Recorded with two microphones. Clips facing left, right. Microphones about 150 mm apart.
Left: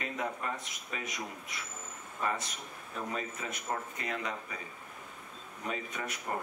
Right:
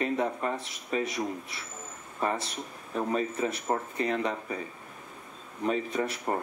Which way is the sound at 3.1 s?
30° right (ahead or behind).